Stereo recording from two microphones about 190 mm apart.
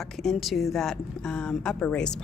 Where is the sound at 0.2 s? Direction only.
Centre (ahead or behind).